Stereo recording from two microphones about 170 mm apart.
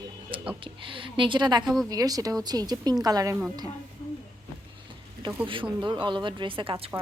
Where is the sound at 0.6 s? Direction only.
30° right (ahead or behind).